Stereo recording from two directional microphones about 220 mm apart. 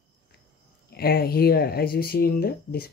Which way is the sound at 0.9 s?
45° left (ahead or behind).